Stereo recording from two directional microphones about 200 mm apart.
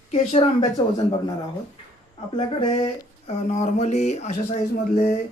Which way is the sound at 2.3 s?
25° left (ahead or behind).